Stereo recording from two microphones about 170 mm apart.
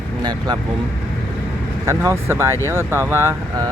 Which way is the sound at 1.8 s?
15° right (ahead or behind).